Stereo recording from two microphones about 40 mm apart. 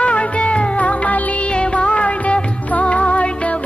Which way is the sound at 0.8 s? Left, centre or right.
Left.